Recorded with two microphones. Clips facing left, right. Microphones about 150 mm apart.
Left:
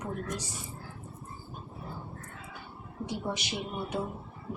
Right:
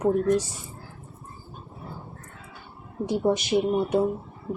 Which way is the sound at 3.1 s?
50° right (ahead or behind).